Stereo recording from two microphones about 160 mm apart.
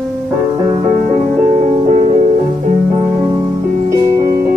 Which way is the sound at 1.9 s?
40° right (ahead or behind).